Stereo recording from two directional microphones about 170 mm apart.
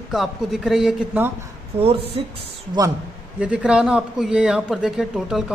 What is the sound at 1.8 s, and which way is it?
Speech, 35° right (ahead or behind).